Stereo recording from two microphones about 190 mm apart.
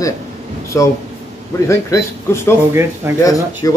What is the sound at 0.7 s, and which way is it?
Speech, 15° left (ahead or behind).